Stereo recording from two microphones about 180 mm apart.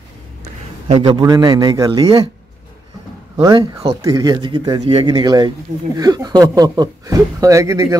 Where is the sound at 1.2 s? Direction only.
20° right (ahead or behind).